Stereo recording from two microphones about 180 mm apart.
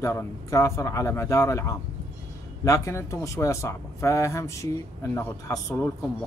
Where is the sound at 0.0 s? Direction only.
15° left (ahead or behind).